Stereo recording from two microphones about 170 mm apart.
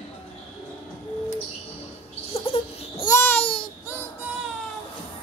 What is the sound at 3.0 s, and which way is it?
Babbling, 15° left (ahead or behind).